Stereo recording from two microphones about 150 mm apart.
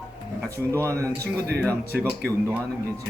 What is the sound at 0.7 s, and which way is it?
Speech, 20° right (ahead or behind).